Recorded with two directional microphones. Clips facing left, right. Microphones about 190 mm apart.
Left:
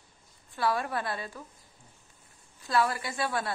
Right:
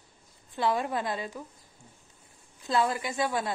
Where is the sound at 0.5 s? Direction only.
20° right (ahead or behind).